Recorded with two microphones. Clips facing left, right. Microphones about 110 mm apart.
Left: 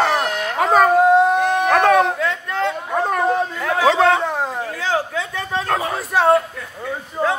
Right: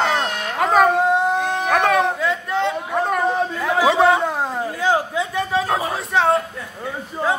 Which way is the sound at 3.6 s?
10° right (ahead or behind).